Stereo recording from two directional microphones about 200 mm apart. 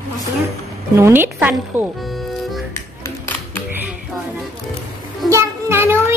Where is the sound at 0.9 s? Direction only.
10° right (ahead or behind).